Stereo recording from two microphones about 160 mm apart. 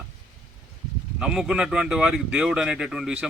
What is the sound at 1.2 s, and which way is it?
A man's voice, 5° right (ahead or behind).